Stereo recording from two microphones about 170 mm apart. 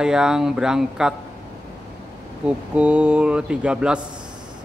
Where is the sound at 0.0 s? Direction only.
5° right (ahead or behind).